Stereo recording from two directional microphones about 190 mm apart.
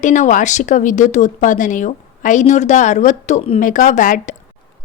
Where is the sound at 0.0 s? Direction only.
40° left (ahead or behind).